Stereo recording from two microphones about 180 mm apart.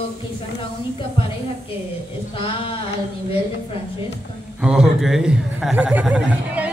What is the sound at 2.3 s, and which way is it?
Speech, 30° left (ahead or behind).